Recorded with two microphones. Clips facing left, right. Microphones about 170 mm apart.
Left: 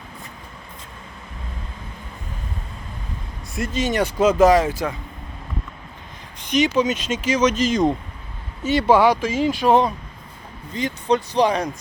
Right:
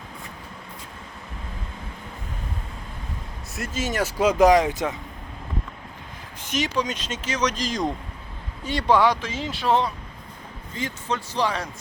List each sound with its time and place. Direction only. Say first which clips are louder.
3.5 s speech: left 5 dB; centre (ahead or behind); by 4.9 s 20° right (ahead or behind)
6.4 s speech: left 7 dB; centre (ahead or behind); by 11.7 s 15° left (ahead or behind)